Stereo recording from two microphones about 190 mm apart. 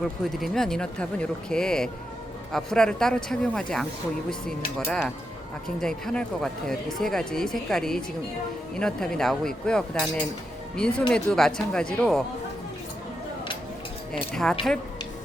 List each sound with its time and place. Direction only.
0.3 s speech: centre (ahead or behind)
14.7 s speech: 5° left (ahead or behind)